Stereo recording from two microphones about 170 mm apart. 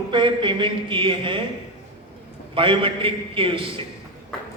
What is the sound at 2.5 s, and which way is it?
A man's voice, 30° right (ahead or behind).